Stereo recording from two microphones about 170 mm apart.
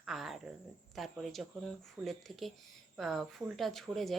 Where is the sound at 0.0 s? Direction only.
Centre (ahead or behind).